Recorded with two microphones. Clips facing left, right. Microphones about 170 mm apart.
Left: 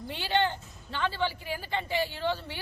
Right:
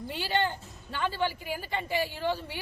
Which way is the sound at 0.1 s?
5° right (ahead or behind).